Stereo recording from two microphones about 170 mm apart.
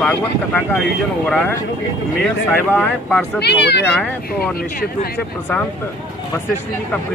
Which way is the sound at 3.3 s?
75° left (ahead or behind).